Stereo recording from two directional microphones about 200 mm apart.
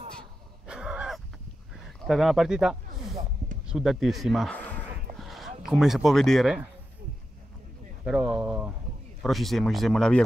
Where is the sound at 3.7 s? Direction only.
Centre (ahead or behind).